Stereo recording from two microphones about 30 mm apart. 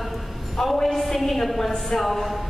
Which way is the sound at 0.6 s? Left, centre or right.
Centre.